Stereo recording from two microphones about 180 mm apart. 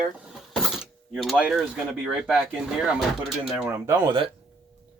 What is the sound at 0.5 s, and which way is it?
Speech, centre (ahead or behind).